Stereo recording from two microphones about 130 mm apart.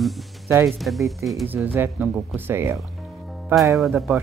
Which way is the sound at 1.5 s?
15° right (ahead or behind).